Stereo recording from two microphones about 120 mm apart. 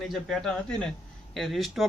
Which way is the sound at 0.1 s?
Centre (ahead or behind).